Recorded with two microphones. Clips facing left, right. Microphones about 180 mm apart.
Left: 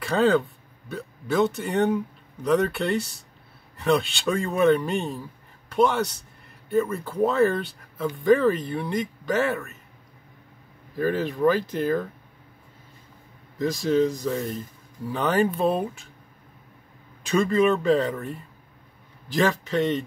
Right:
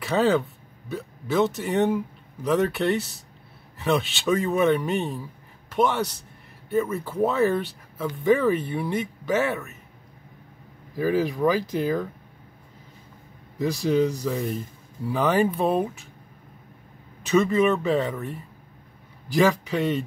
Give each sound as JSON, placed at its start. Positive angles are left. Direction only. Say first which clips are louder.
{"t": 0.0, "sound": "a man's voice", "louder": "left 1 dB", "side_deg": -5}
{"t": 11.0, "sound": "speech", "louder": "right 1 dB", "side_deg": -10}
{"t": 13.6, "sound": "speech", "louder": "even", "side_deg": -10}
{"t": 17.3, "sound": "speech", "louder": "right 1 dB", "side_deg": -5}